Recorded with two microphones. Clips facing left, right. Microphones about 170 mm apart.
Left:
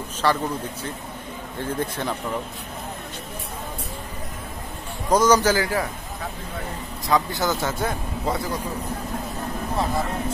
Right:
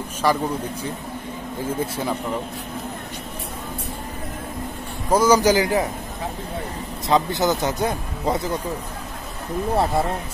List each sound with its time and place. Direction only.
0.2 s a man's voice: 10° right (ahead or behind)
1.6 s a man's voice: 10° right (ahead or behind)
5.1 s a man's voice: 10° right (ahead or behind)
7.1 s speech: 20° right (ahead or behind)